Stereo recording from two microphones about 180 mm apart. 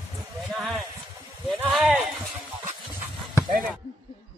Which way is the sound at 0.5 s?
Centre (ahead or behind).